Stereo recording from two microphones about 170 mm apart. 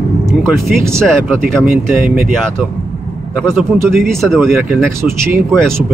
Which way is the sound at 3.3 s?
10° right (ahead or behind).